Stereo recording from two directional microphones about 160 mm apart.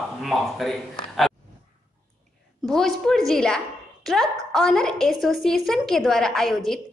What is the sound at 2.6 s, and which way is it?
A woman's voice, centre (ahead or behind).